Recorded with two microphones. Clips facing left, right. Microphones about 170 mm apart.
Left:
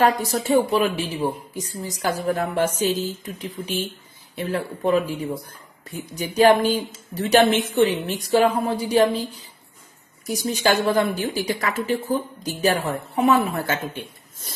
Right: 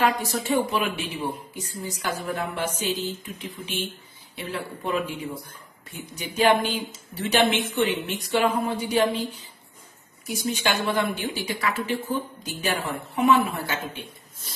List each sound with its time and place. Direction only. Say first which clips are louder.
0.0 s speech: left 4 dB; 40° left (ahead or behind)